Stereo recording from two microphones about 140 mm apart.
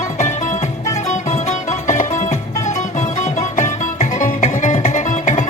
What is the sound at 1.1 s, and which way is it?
Music, 60° left (ahead or behind).